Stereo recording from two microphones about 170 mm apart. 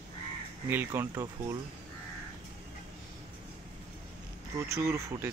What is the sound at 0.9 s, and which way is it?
Speech, 10° right (ahead or behind).